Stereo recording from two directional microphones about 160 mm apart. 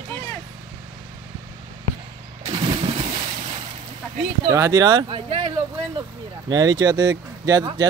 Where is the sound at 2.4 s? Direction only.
35° right (ahead or behind).